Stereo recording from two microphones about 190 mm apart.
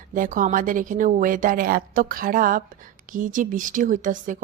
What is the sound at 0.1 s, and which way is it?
Speech, 45° right (ahead or behind).